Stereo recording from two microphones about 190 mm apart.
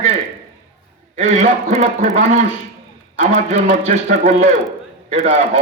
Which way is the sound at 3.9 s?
40° right (ahead or behind).